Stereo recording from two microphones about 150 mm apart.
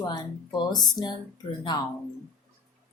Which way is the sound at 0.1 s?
25° left (ahead or behind).